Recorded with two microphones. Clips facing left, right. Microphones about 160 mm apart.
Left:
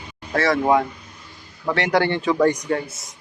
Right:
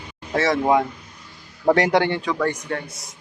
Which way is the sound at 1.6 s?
40° right (ahead or behind).